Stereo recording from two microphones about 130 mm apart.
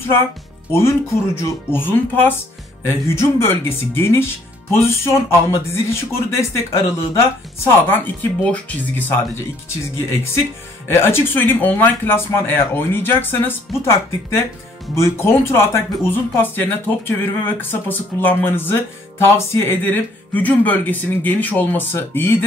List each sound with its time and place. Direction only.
0.7 s speech: 20° left (ahead or behind)
10.9 s speech: 20° left (ahead or behind)